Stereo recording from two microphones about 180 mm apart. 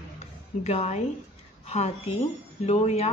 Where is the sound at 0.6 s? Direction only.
35° left (ahead or behind).